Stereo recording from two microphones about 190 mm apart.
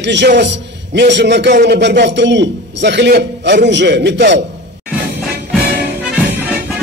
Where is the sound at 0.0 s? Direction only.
65° right (ahead or behind).